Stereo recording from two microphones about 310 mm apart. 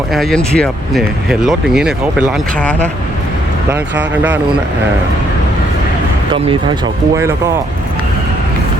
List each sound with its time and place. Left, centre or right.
0.1 s speech: centre
6.3 s speech: centre